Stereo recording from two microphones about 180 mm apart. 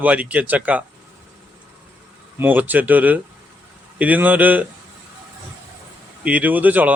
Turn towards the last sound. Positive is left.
turn(degrees=-10)  # may be behind; listen again after turning